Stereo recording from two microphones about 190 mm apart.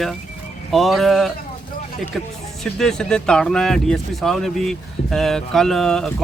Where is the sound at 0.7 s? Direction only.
Centre (ahead or behind).